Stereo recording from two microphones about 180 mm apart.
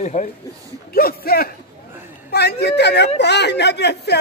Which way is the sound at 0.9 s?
55° left (ahead or behind).